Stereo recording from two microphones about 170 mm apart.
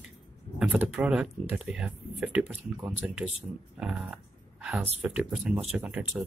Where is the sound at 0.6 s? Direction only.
5° right (ahead or behind).